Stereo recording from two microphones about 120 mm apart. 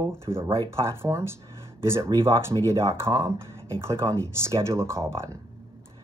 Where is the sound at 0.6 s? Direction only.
25° right (ahead or behind).